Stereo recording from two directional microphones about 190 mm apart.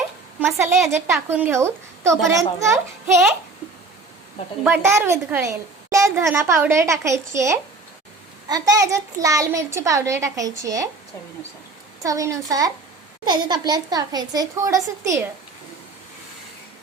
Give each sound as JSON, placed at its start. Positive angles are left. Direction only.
{"t": 0.3, "sound": "a sound", "side_deg": -5}
{"t": 0.9, "sound": "a woman's voice", "side_deg": -15}
{"t": 4.6, "sound": "a woman's voice", "side_deg": -10}
{"t": 12.0, "sound": "a woman's voice", "side_deg": -15}